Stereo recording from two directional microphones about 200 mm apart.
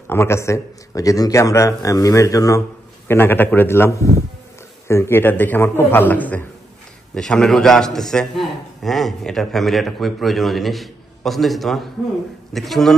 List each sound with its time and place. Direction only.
0.1 s a man's voice: 15° left (ahead or behind)